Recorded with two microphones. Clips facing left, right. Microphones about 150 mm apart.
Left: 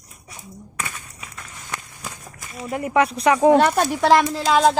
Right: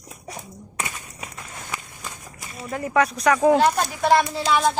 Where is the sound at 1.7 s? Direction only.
5° right (ahead or behind).